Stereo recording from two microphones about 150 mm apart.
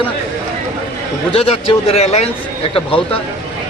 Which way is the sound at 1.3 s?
40° left (ahead or behind).